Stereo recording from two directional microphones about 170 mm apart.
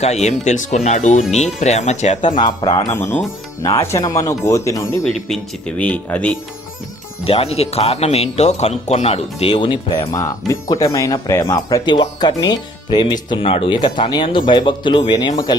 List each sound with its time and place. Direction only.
0.0 s speech: 40° left (ahead or behind)
2.4 s speech: 25° left (ahead or behind)
5.3 s speech: 5° left (ahead or behind)
7.3 s speech: 35° left (ahead or behind)